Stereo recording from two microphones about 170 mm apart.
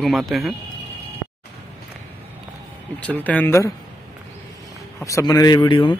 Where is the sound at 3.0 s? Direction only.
10° left (ahead or behind).